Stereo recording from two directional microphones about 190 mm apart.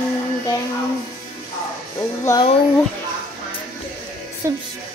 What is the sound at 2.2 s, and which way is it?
Speech, 15° left (ahead or behind).